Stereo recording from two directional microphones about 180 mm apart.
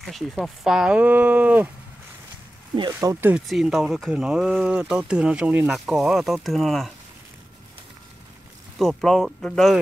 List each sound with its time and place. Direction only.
0.0 s speech: centre (ahead or behind)
2.7 s speech: 20° right (ahead or behind); by 6.9 s centre (ahead or behind)
8.7 s speech: centre (ahead or behind)